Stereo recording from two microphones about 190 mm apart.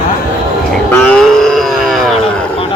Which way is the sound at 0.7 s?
5° left (ahead or behind).